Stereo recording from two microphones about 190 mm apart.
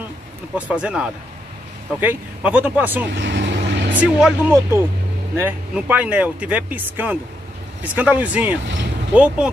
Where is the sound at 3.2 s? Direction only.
70° right (ahead or behind).